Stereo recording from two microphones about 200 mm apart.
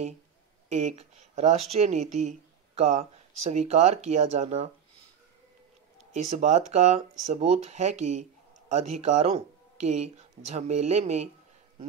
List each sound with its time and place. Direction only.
0.7 s speech: 35° right (ahead or behind)
6.3 s speech: 35° right (ahead or behind)